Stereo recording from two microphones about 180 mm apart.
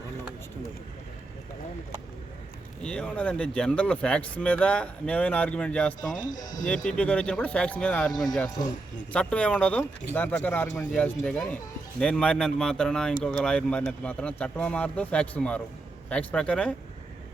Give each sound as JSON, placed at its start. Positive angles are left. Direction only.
{"t": 2.8, "sound": "speech", "side_deg": 5}
{"t": 6.3, "sound": "speech", "side_deg": 45}
{"t": 6.8, "sound": "speech", "side_deg": 5}
{"t": 8.1, "sound": "speech", "side_deg": 20}
{"t": 9.1, "sound": "speech", "side_deg": 5}